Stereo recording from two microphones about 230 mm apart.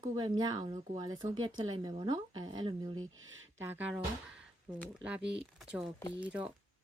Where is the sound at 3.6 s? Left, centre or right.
Centre.